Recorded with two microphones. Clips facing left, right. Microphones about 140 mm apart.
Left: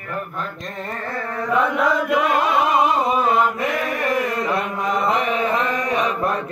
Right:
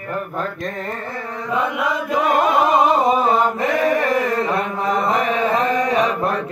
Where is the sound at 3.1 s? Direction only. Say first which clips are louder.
Right 2 dB; 30° right (ahead or behind).